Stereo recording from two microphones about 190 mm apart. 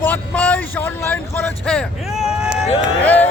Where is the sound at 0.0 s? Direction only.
10° left (ahead or behind).